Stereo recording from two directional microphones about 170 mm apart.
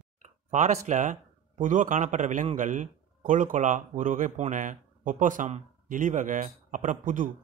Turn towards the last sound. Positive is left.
turn(degrees=-50)  # may be behind; listen again after turning